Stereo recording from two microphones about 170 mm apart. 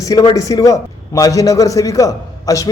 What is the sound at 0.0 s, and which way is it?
A man's voice, 20° left (ahead or behind).